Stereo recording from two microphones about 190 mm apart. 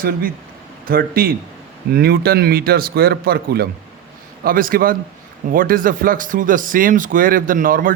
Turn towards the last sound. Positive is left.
turn(degrees=-45)  # may be behind; listen again after turning